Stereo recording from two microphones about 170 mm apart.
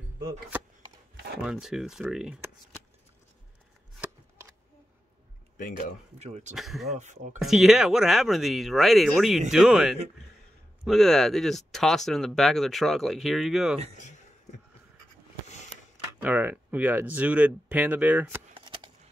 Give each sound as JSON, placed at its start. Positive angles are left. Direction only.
{"t": 1.4, "sound": "speech", "side_deg": -5}
{"t": 5.6, "sound": "speech", "side_deg": 55}
{"t": 6.1, "sound": "speech", "side_deg": -40}
{"t": 6.5, "sound": "speech", "side_deg": 0}
{"t": 13.9, "sound": "a sound", "side_deg": 45}
{"t": 16.2, "sound": "speech", "side_deg": -10}
{"t": 18.5, "sound": "a sound", "side_deg": -30}